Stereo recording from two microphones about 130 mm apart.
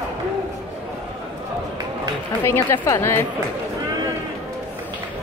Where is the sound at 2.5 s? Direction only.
20° left (ahead or behind).